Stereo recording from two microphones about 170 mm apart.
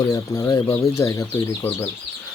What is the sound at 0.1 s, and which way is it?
Speech, 20° left (ahead or behind).